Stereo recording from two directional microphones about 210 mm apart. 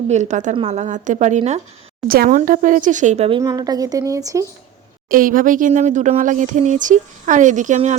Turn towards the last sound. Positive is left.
turn(degrees=-35)  # may be behind; listen again after turning